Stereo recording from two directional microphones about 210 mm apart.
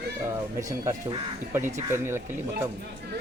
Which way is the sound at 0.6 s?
15° right (ahead or behind).